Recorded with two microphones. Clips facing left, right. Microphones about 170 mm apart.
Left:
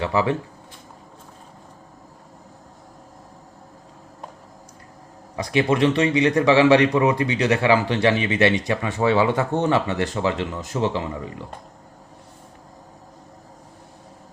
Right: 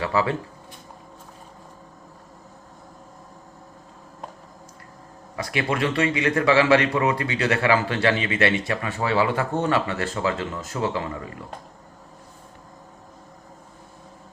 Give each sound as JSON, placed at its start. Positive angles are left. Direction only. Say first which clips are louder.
{"t": 0.0, "sound": "speech", "louder": "left 2 dB", "side_deg": 20}
{"t": 5.4, "sound": "speech", "louder": "left 5 dB", "side_deg": 20}